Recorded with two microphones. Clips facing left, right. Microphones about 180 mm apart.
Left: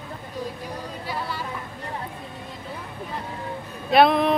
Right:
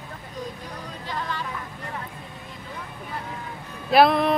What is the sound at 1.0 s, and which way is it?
Speech, 10° left (ahead or behind).